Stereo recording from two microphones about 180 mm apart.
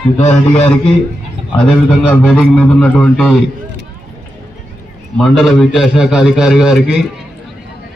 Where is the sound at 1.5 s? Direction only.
5° left (ahead or behind).